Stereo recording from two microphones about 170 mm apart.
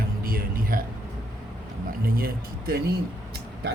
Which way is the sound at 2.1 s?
60° right (ahead or behind).